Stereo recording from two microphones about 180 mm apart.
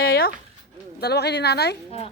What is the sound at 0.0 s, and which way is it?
Dog, 55° left (ahead or behind).